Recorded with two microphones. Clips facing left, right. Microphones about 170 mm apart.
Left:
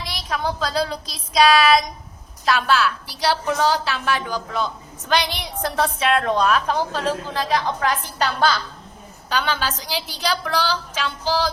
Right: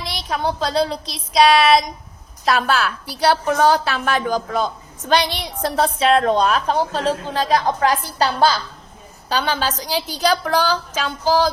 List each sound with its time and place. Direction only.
0.3 s child singing: 30° right (ahead or behind)
2.4 s a woman's voice: 40° right (ahead or behind)